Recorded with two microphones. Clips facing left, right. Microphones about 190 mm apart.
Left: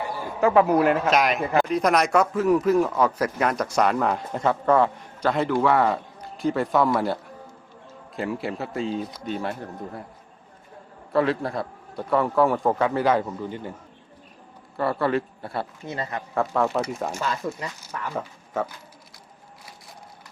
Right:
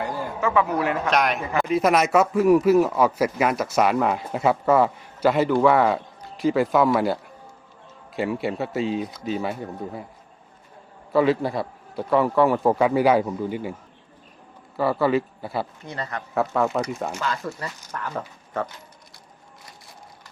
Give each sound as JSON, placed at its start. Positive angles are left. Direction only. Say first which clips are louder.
{"t": 0.3, "sound": "speech", "louder": "left 5 dB", "side_deg": 40}
{"t": 1.0, "sound": "a man's voice", "louder": "left 1 dB", "side_deg": 0}
{"t": 11.1, "sound": "speech", "louder": "right 3 dB", "side_deg": 0}
{"t": 14.8, "sound": "speech", "louder": "right 3 dB", "side_deg": 0}
{"t": 15.9, "sound": "speech", "louder": "left 1 dB", "side_deg": 20}
{"t": 16.3, "sound": "speech", "louder": "right 1 dB", "side_deg": 0}
{"t": 17.2, "sound": "speech", "louder": "even", "side_deg": 25}
{"t": 17.6, "sound": "speech", "louder": "even", "side_deg": 10}